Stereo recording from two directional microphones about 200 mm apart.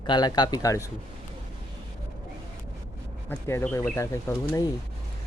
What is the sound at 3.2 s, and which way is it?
Speech, 10° left (ahead or behind).